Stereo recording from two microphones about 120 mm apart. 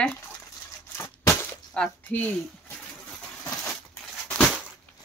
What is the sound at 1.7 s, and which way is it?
Speech, 10° left (ahead or behind).